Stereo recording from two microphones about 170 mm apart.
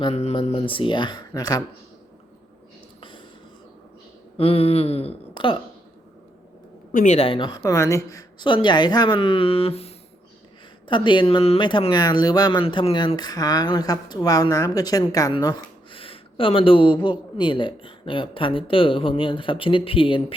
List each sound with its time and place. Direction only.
0.0 s speech: 40° left (ahead or behind); by 1.6 s 20° left (ahead or behind)
4.4 s a sound: 35° left (ahead or behind)
6.9 s speech: 45° left (ahead or behind)